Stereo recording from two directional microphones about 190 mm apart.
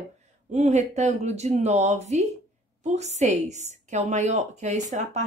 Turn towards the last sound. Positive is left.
turn(degrees=-40)  # may be behind; listen again after turning